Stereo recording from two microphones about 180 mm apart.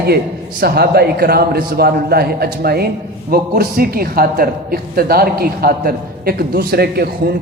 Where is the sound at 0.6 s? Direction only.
60° right (ahead or behind).